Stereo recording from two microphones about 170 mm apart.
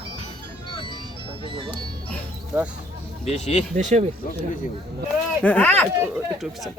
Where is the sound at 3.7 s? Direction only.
45° right (ahead or behind).